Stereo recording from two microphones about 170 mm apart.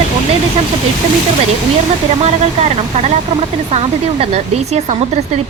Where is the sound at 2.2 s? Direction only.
40° right (ahead or behind).